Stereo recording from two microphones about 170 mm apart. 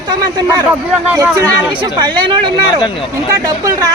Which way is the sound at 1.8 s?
25° right (ahead or behind).